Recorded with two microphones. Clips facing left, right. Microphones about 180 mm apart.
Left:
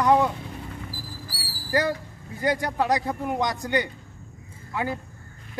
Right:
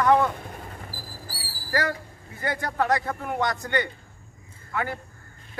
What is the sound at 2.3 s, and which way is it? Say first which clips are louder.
Speech: left 3 dB; 15° left (ahead or behind).